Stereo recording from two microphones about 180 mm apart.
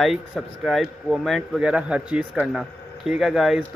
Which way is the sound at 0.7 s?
Centre (ahead or behind).